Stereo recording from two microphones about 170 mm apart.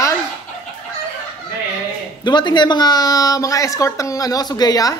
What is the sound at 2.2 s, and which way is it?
Speech, 25° left (ahead or behind).